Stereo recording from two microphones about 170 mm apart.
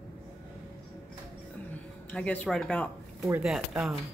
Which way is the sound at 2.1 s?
5° left (ahead or behind).